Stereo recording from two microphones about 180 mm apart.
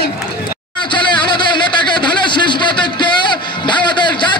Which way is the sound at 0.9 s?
25° left (ahead or behind).